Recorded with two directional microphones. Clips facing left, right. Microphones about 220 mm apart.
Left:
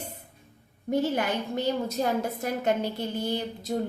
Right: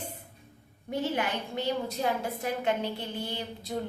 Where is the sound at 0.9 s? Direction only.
45° left (ahead or behind).